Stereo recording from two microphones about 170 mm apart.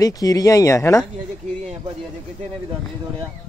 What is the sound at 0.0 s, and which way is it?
Speech, 20° left (ahead or behind).